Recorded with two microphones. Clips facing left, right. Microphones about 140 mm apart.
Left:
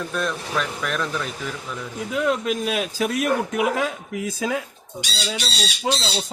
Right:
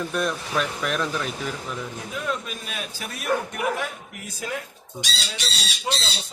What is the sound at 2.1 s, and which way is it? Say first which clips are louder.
A man's voice: left 9 dB; 90° left.